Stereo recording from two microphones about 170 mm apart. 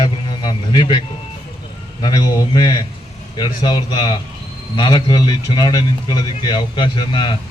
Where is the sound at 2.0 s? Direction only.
25° left (ahead or behind).